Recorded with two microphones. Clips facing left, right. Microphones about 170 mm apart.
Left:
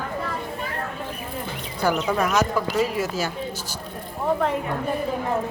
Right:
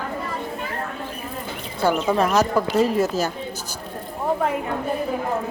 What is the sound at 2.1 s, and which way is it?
Speech, 35° right (ahead or behind).